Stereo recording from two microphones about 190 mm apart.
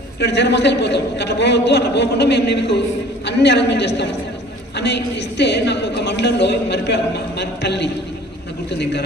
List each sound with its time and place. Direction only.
0.2 s a woman's voice: 65° left (ahead or behind)